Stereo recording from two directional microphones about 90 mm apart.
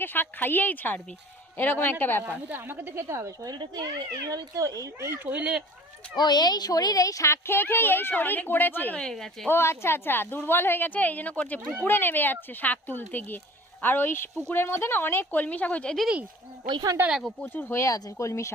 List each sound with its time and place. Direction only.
0.0 s a woman's voice: 20° left (ahead or behind)
2.2 s speech: 20° right (ahead or behind)
3.5 s speech: 50° right (ahead or behind); by 5.3 s 30° right (ahead or behind)
5.3 s speech: 15° right (ahead or behind)
6.1 s a woman's voice: 50° left (ahead or behind); by 9.0 s 20° left (ahead or behind)
9.0 s speech: 5° left (ahead or behind)
9.5 s a woman's voice: 25° left (ahead or behind)
16.0 s speech: 10° right (ahead or behind)
16.6 s speech: 50° right (ahead or behind)
17.1 s speech: centre (ahead or behind)
17.4 s speech: 20° left (ahead or behind)